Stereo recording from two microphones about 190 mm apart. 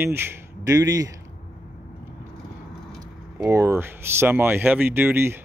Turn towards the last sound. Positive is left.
turn(degrees=-10)  # may be behind; listen again after turning